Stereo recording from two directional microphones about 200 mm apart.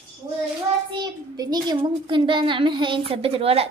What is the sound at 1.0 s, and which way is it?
A woman's voice, 20° right (ahead or behind).